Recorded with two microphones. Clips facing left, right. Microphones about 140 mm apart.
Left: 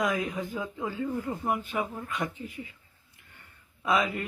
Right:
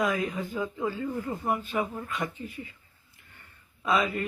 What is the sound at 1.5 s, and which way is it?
Speech, 15° left (ahead or behind).